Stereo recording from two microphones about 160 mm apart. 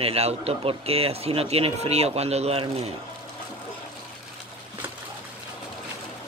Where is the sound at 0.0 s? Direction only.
40° right (ahead or behind).